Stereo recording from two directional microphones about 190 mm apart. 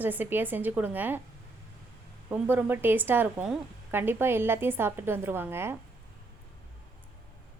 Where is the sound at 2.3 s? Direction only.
10° right (ahead or behind).